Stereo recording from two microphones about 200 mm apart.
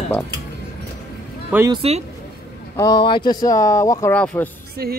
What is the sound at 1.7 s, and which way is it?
Speech, 30° right (ahead or behind).